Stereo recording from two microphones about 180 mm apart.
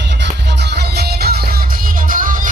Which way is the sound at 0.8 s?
60° right (ahead or behind).